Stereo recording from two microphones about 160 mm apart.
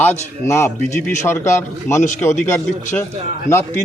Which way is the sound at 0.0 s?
15° left (ahead or behind).